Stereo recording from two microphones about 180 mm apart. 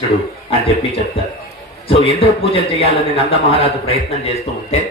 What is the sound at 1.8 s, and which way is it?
A man's voice, 30° left (ahead or behind).